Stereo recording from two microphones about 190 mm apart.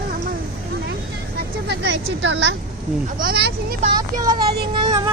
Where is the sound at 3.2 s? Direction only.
55° right (ahead or behind).